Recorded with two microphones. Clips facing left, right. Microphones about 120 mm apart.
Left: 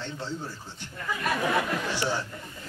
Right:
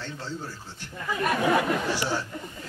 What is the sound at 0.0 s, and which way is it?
Speech, 15° left (ahead or behind).